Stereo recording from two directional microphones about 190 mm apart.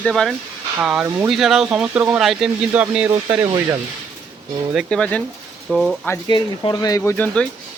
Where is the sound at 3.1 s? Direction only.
20° right (ahead or behind).